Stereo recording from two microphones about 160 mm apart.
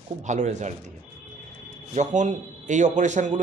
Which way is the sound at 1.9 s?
50° right (ahead or behind).